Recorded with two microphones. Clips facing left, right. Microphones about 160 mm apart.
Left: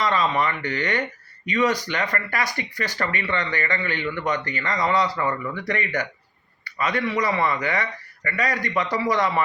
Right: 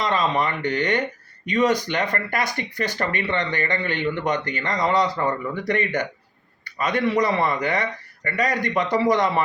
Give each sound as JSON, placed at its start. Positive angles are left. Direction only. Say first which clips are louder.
{"t": 0.0, "sound": "speech", "louder": "even", "side_deg": -20}